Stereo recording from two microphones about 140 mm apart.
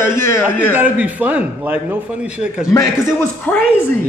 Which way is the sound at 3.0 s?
15° left (ahead or behind).